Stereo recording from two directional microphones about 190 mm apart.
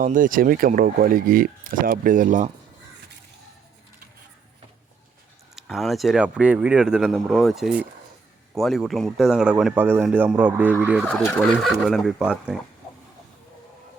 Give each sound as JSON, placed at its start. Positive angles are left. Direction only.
{"t": 0.0, "sound": "speech", "side_deg": -45}
{"t": 5.5, "sound": "speech", "side_deg": 0}
{"t": 11.1, "sound": "speech", "side_deg": 5}